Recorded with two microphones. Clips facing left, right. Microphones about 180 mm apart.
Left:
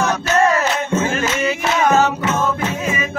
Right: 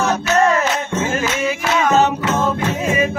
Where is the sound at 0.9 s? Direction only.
10° left (ahead or behind).